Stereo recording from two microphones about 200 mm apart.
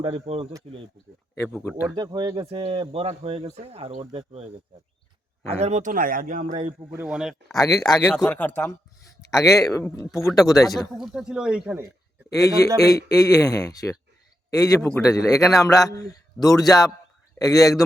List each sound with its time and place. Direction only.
0.0 s speech: 30° right (ahead or behind)
1.4 s a man's voice: 10° left (ahead or behind)
2.0 s speech: 20° right (ahead or behind)
5.5 s speech: 30° right (ahead or behind)
6.9 s speech: 5° right (ahead or behind)
7.5 s a man's voice: 15° left (ahead or behind)
8.1 s a man's voice: 5° left (ahead or behind)
10.9 s speech: centre (ahead or behind)
12.3 s a man's voice: 15° left (ahead or behind)
14.8 s a man's voice: 10° left (ahead or behind)